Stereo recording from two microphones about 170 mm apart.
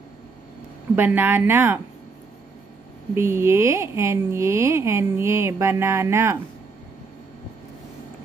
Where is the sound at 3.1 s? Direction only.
15° right (ahead or behind).